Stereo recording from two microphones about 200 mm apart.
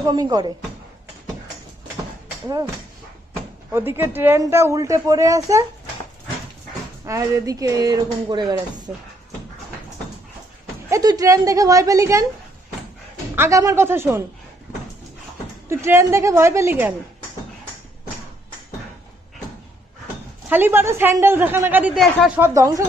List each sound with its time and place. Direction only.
0.0 s a woman's voice: 20° right (ahead or behind)
3.7 s a woman's voice: 10° right (ahead or behind)
7.1 s a woman's voice: 15° right (ahead or behind)
10.9 s speech: 20° right (ahead or behind)
13.4 s a woman's voice: 15° right (ahead or behind)
15.7 s a woman's voice: 15° right (ahead or behind)
20.4 s a woman's voice: 10° right (ahead or behind)
22.4 s a woman's voice: 15° right (ahead or behind)